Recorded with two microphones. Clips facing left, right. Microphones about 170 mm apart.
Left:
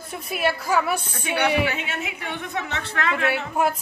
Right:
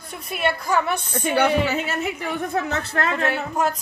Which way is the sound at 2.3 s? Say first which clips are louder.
Right 5 dB; 40° right (ahead or behind).